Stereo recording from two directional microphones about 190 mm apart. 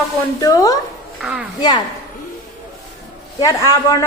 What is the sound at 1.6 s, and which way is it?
Speech, 20° left (ahead or behind).